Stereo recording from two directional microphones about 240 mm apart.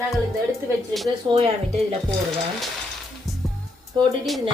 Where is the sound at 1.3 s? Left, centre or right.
Centre.